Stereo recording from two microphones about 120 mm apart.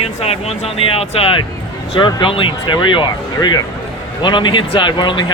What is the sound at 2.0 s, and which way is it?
Speech, 40° left (ahead or behind).